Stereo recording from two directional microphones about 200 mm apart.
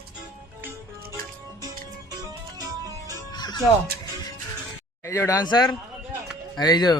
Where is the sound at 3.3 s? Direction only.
20° left (ahead or behind).